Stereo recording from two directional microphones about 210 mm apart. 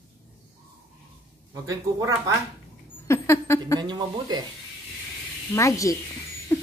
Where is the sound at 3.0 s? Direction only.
15° left (ahead or behind).